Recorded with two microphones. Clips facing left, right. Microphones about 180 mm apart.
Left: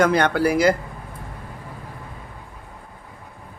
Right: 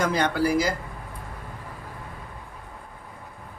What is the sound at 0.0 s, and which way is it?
Speech, 60° left (ahead or behind).